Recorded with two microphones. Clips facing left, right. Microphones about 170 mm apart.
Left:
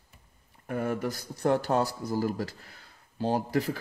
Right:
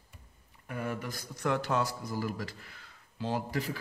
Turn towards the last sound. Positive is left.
turn(degrees=40)  # may be behind; listen again after turning